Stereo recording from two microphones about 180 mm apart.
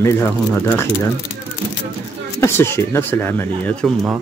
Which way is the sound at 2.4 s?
15° left (ahead or behind).